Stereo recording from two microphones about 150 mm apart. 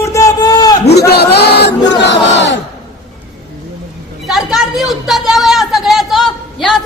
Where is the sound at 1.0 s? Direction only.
90° left.